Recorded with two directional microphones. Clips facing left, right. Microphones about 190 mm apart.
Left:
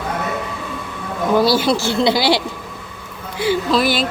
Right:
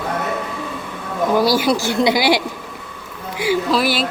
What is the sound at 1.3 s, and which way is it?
A woman's voice, 10° right (ahead or behind).